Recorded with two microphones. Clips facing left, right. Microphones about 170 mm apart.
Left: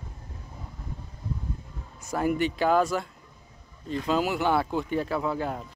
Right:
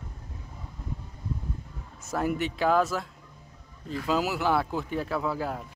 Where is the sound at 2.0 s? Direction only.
Centre (ahead or behind).